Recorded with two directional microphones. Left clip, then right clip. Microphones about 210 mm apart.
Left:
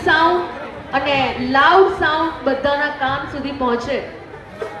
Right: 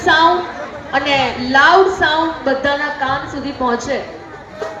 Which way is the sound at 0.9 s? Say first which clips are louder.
Right 2 dB; 40° right (ahead or behind).